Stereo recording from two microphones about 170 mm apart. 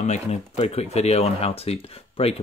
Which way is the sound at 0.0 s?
40° left (ahead or behind).